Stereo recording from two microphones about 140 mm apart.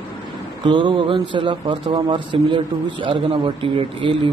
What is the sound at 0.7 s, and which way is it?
Speech, 35° right (ahead or behind).